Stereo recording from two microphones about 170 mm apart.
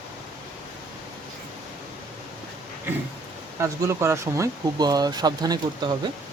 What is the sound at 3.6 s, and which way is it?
Speech, 15° right (ahead or behind).